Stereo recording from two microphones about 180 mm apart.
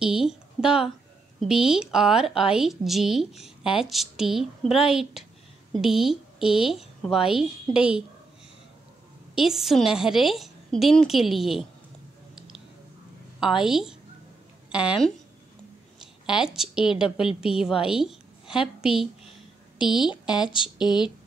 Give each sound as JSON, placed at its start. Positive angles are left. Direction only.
{"t": 0.0, "sound": "a sound", "side_deg": -5}
{"t": 1.4, "sound": "a woman's voice", "side_deg": -5}
{"t": 9.3, "sound": "a woman's voice", "side_deg": 0}
{"t": 13.4, "sound": "a woman's voice", "side_deg": -5}
{"t": 16.3, "sound": "a woman's voice", "side_deg": -5}
{"t": 20.1, "sound": "speech", "side_deg": 25}